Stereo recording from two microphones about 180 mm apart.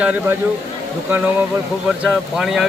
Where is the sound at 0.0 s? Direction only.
5° right (ahead or behind).